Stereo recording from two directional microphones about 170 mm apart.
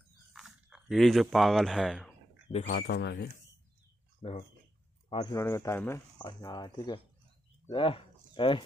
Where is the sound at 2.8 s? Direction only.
75° left (ahead or behind).